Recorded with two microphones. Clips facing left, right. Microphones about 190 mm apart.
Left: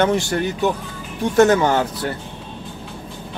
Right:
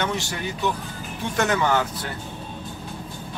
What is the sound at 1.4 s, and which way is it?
Speech, 40° left (ahead or behind).